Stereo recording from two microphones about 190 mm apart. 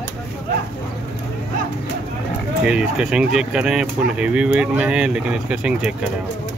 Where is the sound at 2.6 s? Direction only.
5° right (ahead or behind).